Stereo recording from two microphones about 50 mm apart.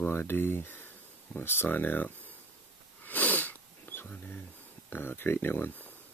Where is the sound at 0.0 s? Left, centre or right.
Left.